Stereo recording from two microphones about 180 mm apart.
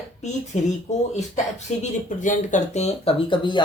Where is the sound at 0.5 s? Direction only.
40° left (ahead or behind).